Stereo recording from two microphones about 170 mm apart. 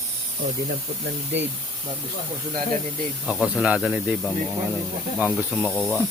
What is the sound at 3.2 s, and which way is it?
Speech, 5° right (ahead or behind).